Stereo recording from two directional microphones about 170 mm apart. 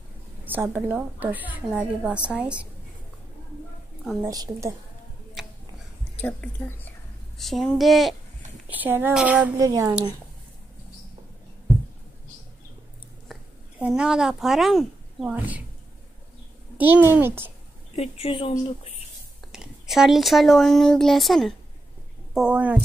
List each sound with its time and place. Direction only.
0.5 s a woman's voice: 10° right (ahead or behind)
4.2 s a woman's voice: 20° right (ahead or behind)
5.4 s tick-tock: centre (ahead or behind)
6.2 s a woman's voice: 10° left (ahead or behind); by 9.5 s 5° right (ahead or behind)
9.6 s speech: 20° right (ahead or behind)
13.3 s a woman's voice: 5° right (ahead or behind)
16.7 s a woman's voice: 10° right (ahead or behind)
17.9 s a woman's voice: 35° left (ahead or behind)
19.5 s a woman's voice: 5° right (ahead or behind)